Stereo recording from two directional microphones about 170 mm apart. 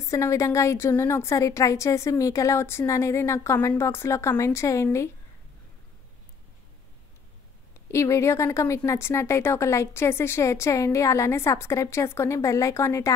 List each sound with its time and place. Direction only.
0.0 s speech: 20° left (ahead or behind)
7.9 s speech: 15° left (ahead or behind)